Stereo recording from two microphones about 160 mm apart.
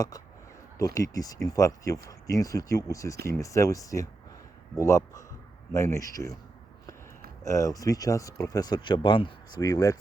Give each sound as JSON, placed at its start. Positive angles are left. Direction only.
{"t": 0.9, "sound": "speech", "side_deg": 20}
{"t": 7.4, "sound": "speech", "side_deg": 20}